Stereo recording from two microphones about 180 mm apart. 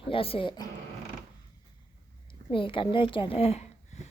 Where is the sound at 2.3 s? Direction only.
30° left (ahead or behind).